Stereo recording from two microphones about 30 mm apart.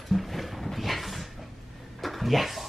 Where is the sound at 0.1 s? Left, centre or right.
Centre.